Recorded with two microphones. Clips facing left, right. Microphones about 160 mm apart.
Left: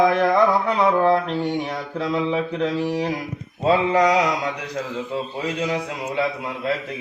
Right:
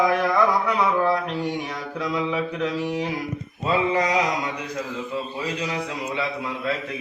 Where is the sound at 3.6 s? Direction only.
90° left.